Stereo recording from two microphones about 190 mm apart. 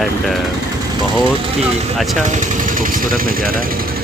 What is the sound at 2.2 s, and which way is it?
Speech, 40° right (ahead or behind).